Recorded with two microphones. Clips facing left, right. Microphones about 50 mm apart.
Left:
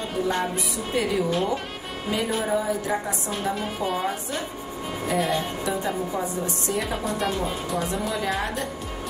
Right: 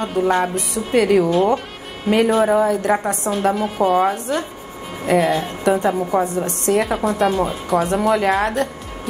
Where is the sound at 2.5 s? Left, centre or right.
Right.